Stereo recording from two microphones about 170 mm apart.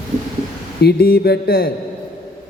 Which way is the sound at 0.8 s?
65° left (ahead or behind).